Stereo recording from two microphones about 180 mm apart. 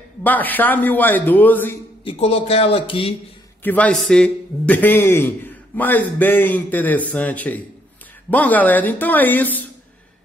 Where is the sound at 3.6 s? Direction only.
10° left (ahead or behind).